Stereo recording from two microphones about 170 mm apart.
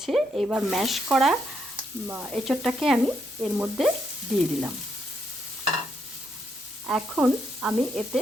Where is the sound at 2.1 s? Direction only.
10° right (ahead or behind).